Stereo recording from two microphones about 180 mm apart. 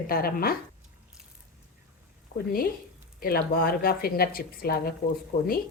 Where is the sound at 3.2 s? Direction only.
55° left (ahead or behind).